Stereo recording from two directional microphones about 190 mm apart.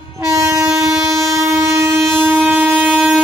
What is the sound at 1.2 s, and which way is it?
Train, 15° right (ahead or behind).